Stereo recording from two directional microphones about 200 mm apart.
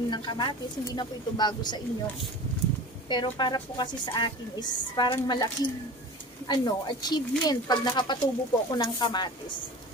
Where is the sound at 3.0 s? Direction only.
20° left (ahead or behind).